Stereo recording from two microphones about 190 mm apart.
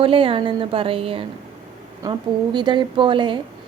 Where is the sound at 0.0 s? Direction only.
30° right (ahead or behind).